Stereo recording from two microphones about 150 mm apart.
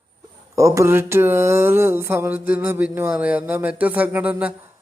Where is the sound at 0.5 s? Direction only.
20° right (ahead or behind).